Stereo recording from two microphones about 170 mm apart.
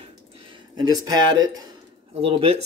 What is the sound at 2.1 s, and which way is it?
Speech, 35° right (ahead or behind).